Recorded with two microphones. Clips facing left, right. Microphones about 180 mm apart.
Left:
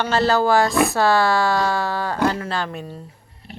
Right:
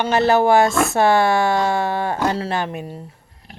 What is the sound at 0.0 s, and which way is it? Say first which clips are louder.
Speech: right 2 dB; 20° right (ahead or behind).